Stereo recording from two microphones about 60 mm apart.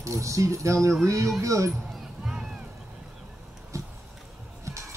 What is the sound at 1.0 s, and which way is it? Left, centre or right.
Speech, right.